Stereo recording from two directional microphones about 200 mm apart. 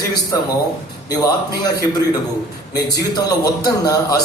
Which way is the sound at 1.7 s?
20° left (ahead or behind).